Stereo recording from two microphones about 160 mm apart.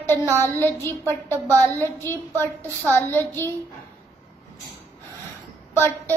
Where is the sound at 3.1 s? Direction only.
15° left (ahead or behind).